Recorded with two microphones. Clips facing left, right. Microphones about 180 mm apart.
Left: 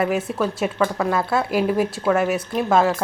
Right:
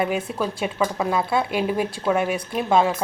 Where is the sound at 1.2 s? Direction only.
25° right (ahead or behind).